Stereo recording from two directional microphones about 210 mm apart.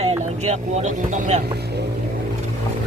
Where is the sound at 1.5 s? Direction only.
50° right (ahead or behind).